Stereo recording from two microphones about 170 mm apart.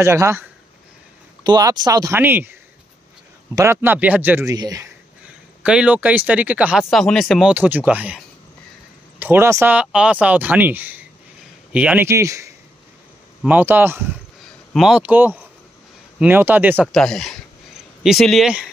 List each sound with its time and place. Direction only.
0.0 s speech: 15° right (ahead or behind)
3.5 s speech: 15° right (ahead or behind)
5.6 s speech: 5° right (ahead or behind)
9.2 s speech: 15° right (ahead or behind)
14.7 s speech: 5° right (ahead or behind)
16.9 s speech: 5° left (ahead or behind)